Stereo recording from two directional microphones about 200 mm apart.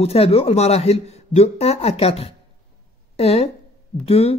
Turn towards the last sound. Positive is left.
turn(degrees=30)  # may be behind; listen again after turning